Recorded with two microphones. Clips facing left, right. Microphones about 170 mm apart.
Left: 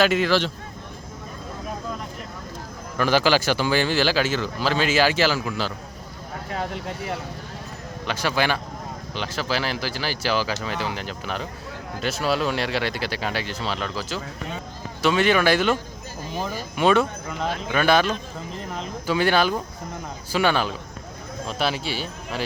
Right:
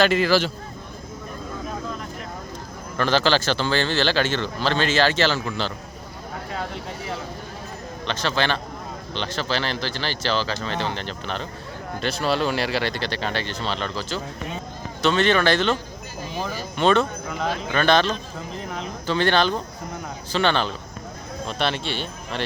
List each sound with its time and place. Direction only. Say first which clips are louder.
0.0 s speech: right 1 dB; centre (ahead or behind)
3.0 s a man's voice: left 1 dB; 10° left (ahead or behind)
6.7 s speech: left 2 dB; 60° left (ahead or behind)
8.0 s a man's voice: even; 10° left (ahead or behind)